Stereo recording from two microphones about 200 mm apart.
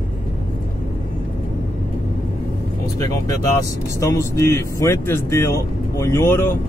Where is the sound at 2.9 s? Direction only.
15° left (ahead or behind).